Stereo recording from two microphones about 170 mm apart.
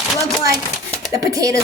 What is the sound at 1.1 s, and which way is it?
Speech, 20° right (ahead or behind).